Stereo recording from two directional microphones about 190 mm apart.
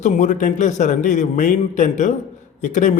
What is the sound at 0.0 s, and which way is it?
A man's voice, 40° left (ahead or behind).